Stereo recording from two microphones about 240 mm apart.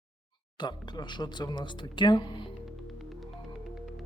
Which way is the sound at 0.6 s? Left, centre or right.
Centre.